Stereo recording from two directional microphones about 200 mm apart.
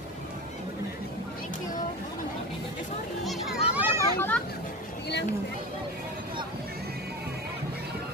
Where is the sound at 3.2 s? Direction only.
Centre (ahead or behind).